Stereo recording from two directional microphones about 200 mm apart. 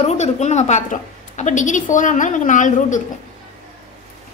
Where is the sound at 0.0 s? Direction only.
35° left (ahead or behind).